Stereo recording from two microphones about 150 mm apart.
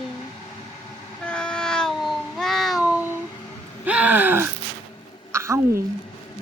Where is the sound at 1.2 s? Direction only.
5° left (ahead or behind); by 5.6 s 20° right (ahead or behind).